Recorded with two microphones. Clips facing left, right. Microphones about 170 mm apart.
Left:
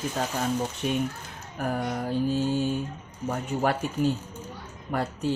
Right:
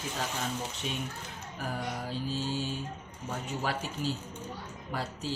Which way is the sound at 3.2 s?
55° left (ahead or behind).